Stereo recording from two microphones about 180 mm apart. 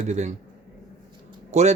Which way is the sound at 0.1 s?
40° right (ahead or behind).